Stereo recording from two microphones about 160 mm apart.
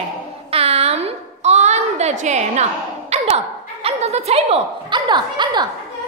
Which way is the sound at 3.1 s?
40° right (ahead or behind).